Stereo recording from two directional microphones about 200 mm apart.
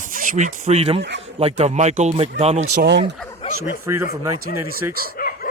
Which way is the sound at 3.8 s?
15° right (ahead or behind).